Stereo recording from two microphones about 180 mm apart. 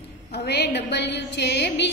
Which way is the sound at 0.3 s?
70° left (ahead or behind).